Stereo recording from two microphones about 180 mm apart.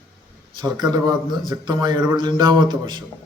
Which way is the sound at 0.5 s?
25° right (ahead or behind).